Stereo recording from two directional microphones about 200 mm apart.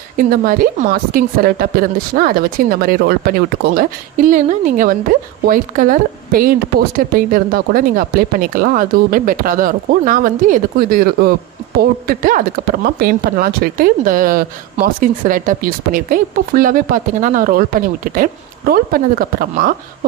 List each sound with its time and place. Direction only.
0.2 s speech: 45° right (ahead or behind)
4.3 s a woman's voice: 40° right (ahead or behind)